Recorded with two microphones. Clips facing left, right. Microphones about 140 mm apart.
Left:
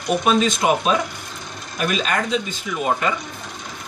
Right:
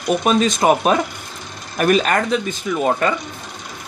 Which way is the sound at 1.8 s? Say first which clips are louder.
Right 6 dB; 55° right (ahead or behind).